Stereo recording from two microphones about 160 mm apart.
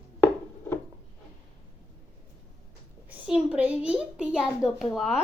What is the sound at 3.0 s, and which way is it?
A child's voice, 5° right (ahead or behind).